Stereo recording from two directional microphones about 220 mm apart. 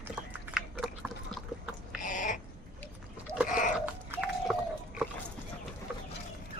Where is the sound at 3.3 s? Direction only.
15° right (ahead or behind).